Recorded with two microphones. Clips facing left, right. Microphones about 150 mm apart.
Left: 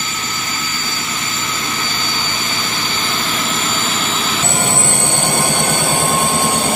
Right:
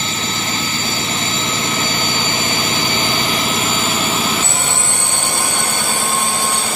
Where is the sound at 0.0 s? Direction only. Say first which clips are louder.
Right 3 dB; 25° right (ahead or behind); by 4.4 s 10° right (ahead or behind).